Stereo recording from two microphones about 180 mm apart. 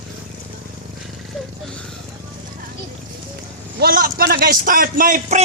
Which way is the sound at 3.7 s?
55° right (ahead or behind).